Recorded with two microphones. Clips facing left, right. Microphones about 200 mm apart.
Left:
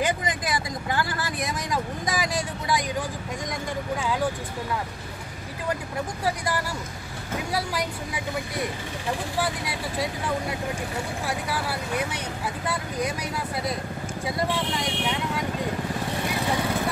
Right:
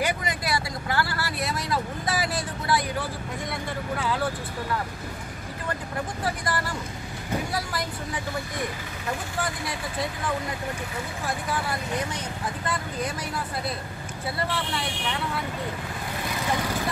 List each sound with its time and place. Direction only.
0.0 s vehicle: 20° left (ahead or behind)
6.2 s speech: 10° left (ahead or behind)
11.2 s speech: 10° left (ahead or behind)